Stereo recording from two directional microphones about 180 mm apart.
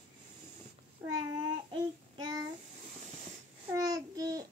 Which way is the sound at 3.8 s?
20° right (ahead or behind).